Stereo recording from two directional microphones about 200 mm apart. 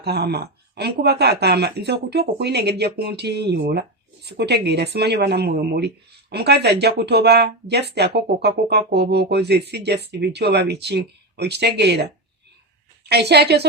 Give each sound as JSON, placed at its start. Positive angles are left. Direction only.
{"t": 0.0, "sound": "speech", "side_deg": -55}